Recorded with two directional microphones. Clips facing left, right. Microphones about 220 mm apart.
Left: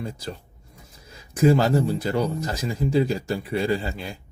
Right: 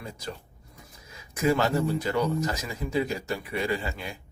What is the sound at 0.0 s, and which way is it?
Speech, 30° left (ahead or behind).